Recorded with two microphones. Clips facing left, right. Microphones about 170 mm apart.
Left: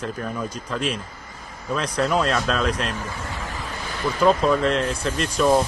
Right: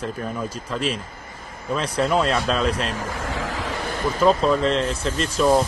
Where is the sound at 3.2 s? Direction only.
90° right.